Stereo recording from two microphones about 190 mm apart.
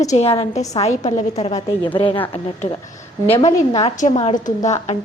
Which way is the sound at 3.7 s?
35° left (ahead or behind).